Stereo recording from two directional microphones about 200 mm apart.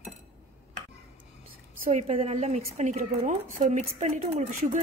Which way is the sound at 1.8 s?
35° right (ahead or behind).